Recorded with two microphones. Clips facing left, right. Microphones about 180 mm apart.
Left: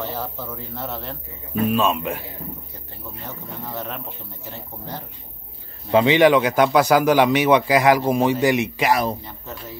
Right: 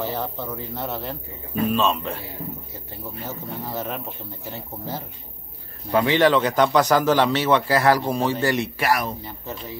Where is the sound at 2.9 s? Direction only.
Centre (ahead or behind).